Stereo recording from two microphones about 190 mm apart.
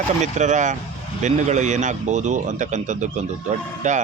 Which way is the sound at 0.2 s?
40° right (ahead or behind).